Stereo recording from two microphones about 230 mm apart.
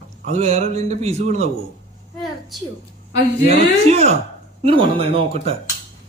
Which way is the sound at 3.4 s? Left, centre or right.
Right.